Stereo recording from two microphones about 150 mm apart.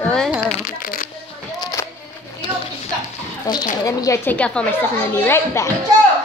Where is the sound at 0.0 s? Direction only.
5° left (ahead or behind).